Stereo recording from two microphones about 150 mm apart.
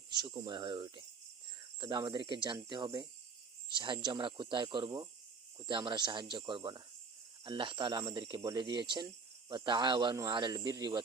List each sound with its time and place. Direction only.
0.1 s speech: 25° right (ahead or behind)